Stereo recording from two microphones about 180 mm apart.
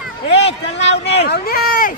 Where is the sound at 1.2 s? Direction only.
60° left (ahead or behind).